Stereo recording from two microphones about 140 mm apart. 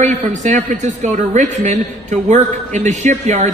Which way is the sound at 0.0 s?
60° right (ahead or behind).